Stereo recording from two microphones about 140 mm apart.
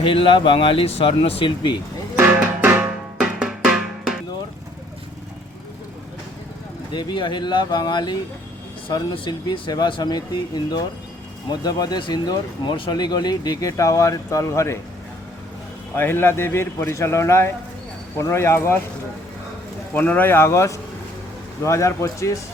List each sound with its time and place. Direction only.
0.0 s speech: 40° left (ahead or behind)
2.1 s music: 15° right (ahead or behind)
6.9 s speech: 30° left (ahead or behind)
16.0 s a man's voice: 15° left (ahead or behind)
19.9 s a man's voice: 15° left (ahead or behind)